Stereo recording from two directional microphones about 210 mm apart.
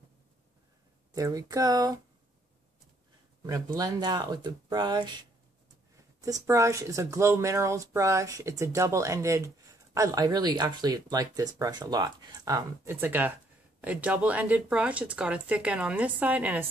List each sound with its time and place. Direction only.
1.1 s speech: 15° right (ahead or behind)
3.4 s speech: 15° right (ahead or behind)
6.2 s speech: 15° right (ahead or behind)